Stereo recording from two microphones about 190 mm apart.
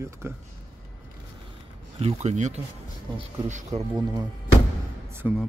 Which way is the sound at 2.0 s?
35° right (ahead or behind).